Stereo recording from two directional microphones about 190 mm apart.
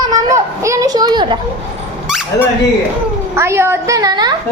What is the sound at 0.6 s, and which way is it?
Speech, 15° right (ahead or behind).